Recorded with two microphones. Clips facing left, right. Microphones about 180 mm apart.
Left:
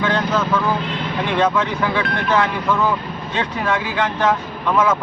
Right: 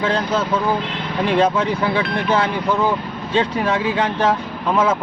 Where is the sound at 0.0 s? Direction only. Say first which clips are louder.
Even; 30° right (ahead or behind).